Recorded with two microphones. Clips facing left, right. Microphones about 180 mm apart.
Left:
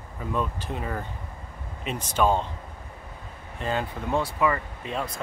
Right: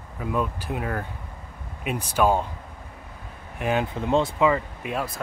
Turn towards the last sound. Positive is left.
turn(degrees=-10)  # may be behind; listen again after turning